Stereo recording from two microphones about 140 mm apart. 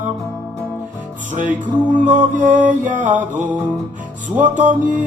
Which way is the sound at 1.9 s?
10° right (ahead or behind).